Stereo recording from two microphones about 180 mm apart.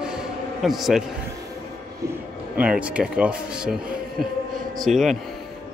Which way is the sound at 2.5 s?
5° right (ahead or behind).